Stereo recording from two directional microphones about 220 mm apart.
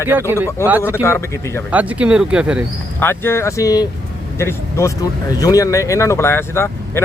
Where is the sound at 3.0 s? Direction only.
10° left (ahead or behind).